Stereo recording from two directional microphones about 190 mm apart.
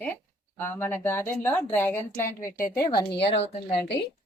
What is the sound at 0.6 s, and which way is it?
A woman's voice, 10° left (ahead or behind).